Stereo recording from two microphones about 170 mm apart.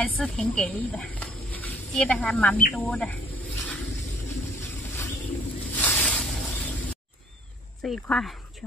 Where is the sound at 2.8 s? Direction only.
10° left (ahead or behind).